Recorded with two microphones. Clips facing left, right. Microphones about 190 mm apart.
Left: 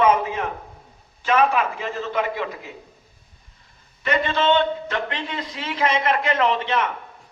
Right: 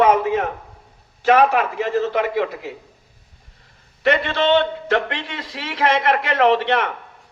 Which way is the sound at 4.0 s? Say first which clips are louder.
Right 3 dB; 70° right (ahead or behind).